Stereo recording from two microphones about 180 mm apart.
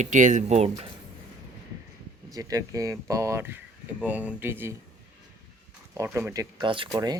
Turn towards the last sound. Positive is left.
turn(degrees=-25)  # may be behind; listen again after turning